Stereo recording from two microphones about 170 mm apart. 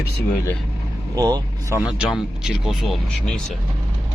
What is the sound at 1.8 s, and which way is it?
Speech, 5° right (ahead or behind).